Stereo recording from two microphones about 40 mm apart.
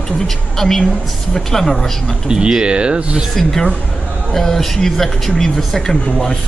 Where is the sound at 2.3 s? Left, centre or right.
Centre.